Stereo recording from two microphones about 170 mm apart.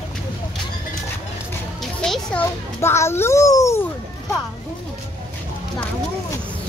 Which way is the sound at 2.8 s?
15° left (ahead or behind).